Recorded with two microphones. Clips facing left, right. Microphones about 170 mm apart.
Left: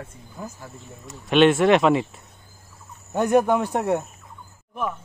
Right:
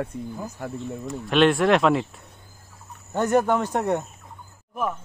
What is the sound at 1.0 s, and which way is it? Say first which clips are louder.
Speech: left 2 dB; centre (ahead or behind).